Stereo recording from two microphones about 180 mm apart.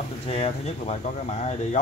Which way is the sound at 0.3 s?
35° left (ahead or behind).